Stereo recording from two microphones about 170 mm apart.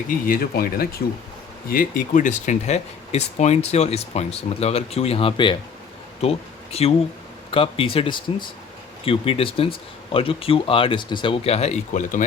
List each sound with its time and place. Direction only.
0.3 s speech: 60° left (ahead or behind)